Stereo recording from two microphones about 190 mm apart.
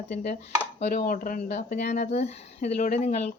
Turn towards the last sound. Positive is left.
turn(degrees=35)  # may be behind; listen again after turning